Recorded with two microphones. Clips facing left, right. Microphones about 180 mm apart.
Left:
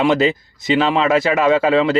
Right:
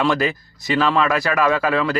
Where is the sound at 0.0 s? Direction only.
20° left (ahead or behind).